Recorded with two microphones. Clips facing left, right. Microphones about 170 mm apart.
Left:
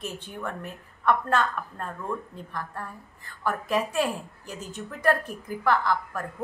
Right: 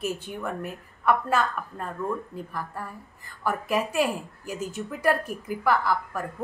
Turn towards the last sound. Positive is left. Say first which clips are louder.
# right 1 dB
turn(degrees=-5)  # may be behind; listen again after turning